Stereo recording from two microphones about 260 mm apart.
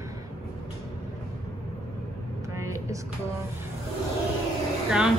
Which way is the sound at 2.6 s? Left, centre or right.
Centre.